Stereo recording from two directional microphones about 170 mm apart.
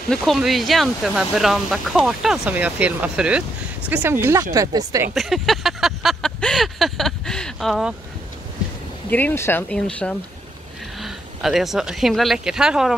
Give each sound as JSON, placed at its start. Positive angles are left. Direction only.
{"t": 0.1, "sound": "speech", "side_deg": 0}
{"t": 5.1, "sound": "a sound", "side_deg": 0}
{"t": 9.1, "sound": "a woman's voice", "side_deg": 10}